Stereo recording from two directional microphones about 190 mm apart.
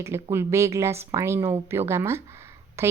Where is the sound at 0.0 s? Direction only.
15° right (ahead or behind).